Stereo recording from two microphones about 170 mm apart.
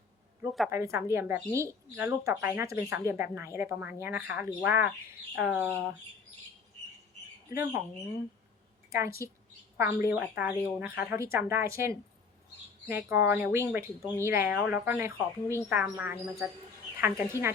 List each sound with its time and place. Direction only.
0.7 s speech: 15° right (ahead or behind)
7.5 s speech: 15° right (ahead or behind)
8.9 s speech: 15° right (ahead or behind)